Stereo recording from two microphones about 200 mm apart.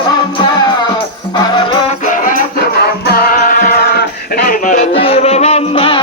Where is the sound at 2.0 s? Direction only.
40° left (ahead or behind).